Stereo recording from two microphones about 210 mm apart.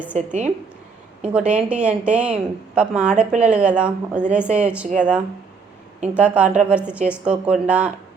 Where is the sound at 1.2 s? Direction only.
5° right (ahead or behind).